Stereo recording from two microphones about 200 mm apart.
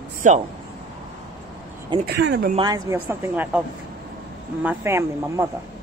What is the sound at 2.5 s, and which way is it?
Speech, 20° right (ahead or behind).